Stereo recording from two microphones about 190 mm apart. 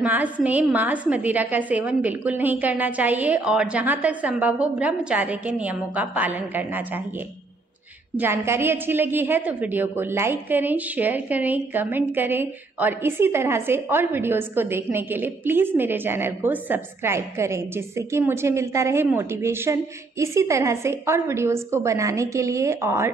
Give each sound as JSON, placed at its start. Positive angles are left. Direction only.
{"t": 0.0, "sound": "a woman's voice", "side_deg": -10}
{"t": 8.2, "sound": "a woman's voice", "side_deg": -10}